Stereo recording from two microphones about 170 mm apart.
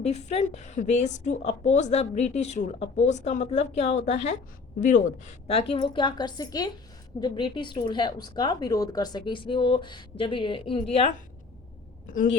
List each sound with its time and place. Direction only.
0.0 s a woman's voice: 40° left (ahead or behind)
12.0 s a woman's voice: 50° left (ahead or behind)